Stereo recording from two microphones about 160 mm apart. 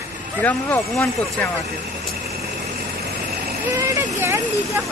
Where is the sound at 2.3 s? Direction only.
75° right (ahead or behind).